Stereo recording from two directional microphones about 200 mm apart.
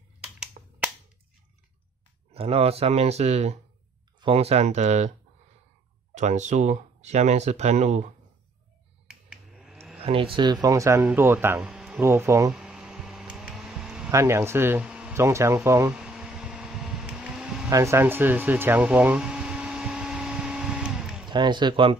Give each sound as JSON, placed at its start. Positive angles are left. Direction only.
{"t": 0.2, "sound": "finger snapping", "side_deg": -5}
{"t": 2.3, "sound": "speech", "side_deg": -30}
{"t": 6.1, "sound": "speech", "side_deg": -35}
{"t": 9.0, "sound": "finger snapping", "side_deg": -5}
{"t": 9.9, "sound": "speech", "side_deg": -30}
{"t": 12.0, "sound": "speech", "side_deg": -15}
{"t": 12.6, "sound": "a sound", "side_deg": -5}
{"t": 14.1, "sound": "speech", "side_deg": -15}
{"t": 16.0, "sound": "mechanical fan", "side_deg": -5}
{"t": 17.6, "sound": "a sound", "side_deg": -15}
{"t": 21.3, "sound": "a man's voice", "side_deg": -20}